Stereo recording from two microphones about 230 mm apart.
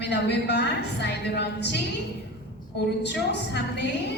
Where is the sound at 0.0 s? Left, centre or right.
Left.